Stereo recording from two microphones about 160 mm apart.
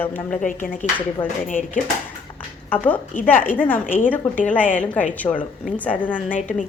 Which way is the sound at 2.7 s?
10° left (ahead or behind).